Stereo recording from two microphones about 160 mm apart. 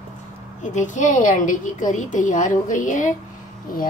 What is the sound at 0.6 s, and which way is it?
A woman's voice, 50° left (ahead or behind).